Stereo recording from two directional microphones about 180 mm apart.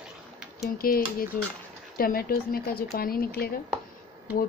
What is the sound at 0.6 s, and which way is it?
Speech, 55° left (ahead or behind).